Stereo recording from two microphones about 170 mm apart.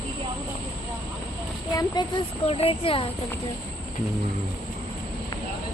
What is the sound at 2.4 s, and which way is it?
Speech, 35° left (ahead or behind).